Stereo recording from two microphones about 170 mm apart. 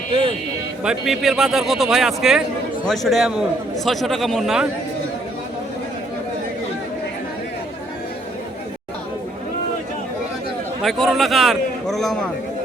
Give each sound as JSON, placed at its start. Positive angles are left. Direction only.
{"t": 0.1, "sound": "a sound", "side_deg": -35}
{"t": 0.9, "sound": "a man's voice", "side_deg": 0}
{"t": 10.8, "sound": "a man's voice", "side_deg": 0}